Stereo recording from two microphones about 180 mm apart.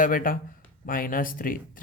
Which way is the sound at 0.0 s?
50° left (ahead or behind).